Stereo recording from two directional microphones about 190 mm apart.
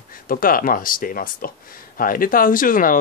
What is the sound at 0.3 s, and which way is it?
Speech, 50° left (ahead or behind).